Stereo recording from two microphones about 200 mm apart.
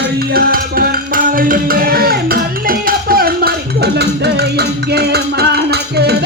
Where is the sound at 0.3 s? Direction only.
50° right (ahead or behind).